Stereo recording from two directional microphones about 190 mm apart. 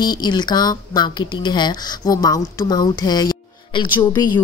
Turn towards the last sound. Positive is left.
turn(degrees=25)  # may be behind; listen again after turning